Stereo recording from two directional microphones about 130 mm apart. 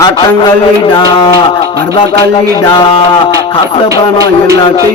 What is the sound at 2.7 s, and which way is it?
Music, 40° left (ahead or behind).